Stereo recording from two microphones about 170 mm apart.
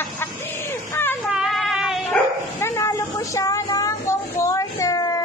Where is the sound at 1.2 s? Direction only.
Centre (ahead or behind).